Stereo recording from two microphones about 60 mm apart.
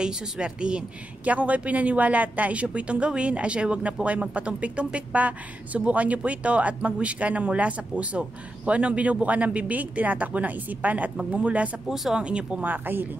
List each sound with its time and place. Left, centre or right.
0.0 s a woman's voice: centre
11.9 s speech: centre
12.6 s speech: right